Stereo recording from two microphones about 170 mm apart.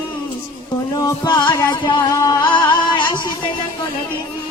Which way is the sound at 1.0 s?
25° left (ahead or behind).